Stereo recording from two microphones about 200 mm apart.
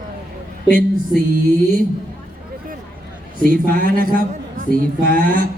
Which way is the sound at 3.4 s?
45° right (ahead or behind).